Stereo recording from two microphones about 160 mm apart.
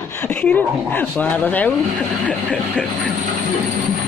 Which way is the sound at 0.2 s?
10° left (ahead or behind).